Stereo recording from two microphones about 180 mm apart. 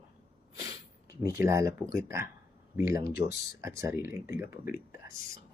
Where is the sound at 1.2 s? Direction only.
15° right (ahead or behind).